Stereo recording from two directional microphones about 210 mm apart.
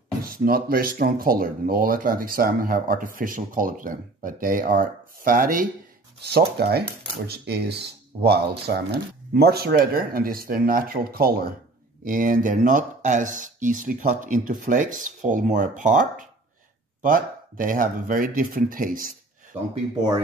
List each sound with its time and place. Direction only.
0.2 s speech: 45° right (ahead or behind)